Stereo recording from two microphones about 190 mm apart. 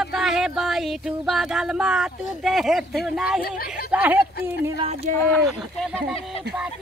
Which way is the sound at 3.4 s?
55° left (ahead or behind).